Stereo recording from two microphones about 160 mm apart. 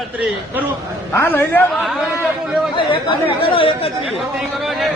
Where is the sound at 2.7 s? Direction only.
35° left (ahead or behind).